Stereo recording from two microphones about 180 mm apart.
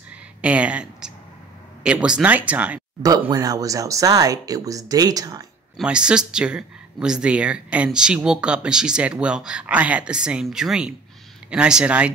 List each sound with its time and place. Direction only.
0.4 s speech: 5° right (ahead or behind)
3.0 s speech: 20° right (ahead or behind)
5.8 s a woman's voice: 5° right (ahead or behind)